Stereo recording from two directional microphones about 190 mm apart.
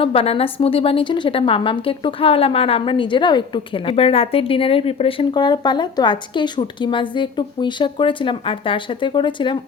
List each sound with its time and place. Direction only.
0.0 s a woman's voice: 30° left (ahead or behind)